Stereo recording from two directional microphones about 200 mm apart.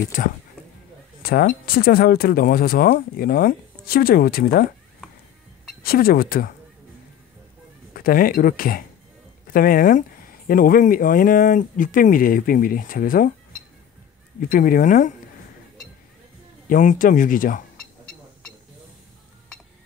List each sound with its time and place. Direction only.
0.1 s speech: 40° left (ahead or behind)
5.8 s speech: 45° left (ahead or behind)
7.9 s speech: 45° left (ahead or behind)
14.4 s speech: 45° left (ahead or behind)
16.6 s speech: 40° left (ahead or behind)